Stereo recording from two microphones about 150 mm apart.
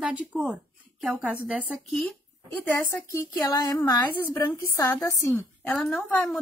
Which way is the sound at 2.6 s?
15° left (ahead or behind).